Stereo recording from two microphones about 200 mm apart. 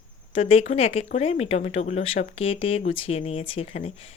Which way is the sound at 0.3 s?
30° left (ahead or behind).